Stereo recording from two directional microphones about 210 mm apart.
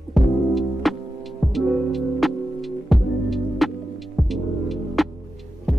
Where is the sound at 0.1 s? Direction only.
Centre (ahead or behind).